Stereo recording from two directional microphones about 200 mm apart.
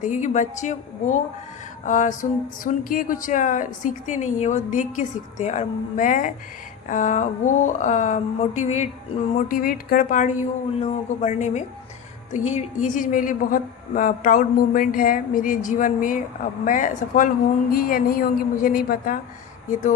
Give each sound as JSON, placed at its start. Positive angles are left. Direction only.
{"t": 0.0, "sound": "a woman's voice", "side_deg": 40}